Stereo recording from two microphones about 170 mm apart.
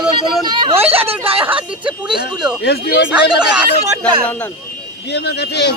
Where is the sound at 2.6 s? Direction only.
65° left (ahead or behind).